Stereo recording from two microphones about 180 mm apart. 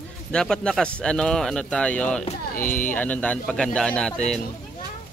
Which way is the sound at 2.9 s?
10° left (ahead or behind).